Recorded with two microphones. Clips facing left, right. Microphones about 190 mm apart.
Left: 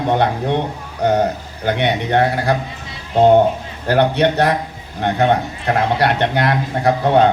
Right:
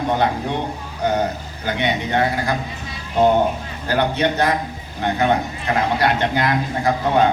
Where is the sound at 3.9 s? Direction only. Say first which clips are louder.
Left 5 dB; 65° left (ahead or behind).